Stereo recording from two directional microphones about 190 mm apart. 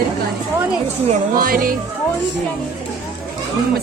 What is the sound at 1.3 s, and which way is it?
Speech, 50° right (ahead or behind).